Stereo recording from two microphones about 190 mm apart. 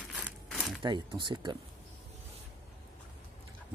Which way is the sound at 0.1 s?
Centre (ahead or behind).